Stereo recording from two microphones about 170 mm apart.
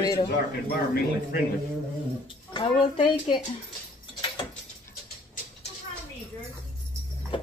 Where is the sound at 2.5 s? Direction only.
30° left (ahead or behind).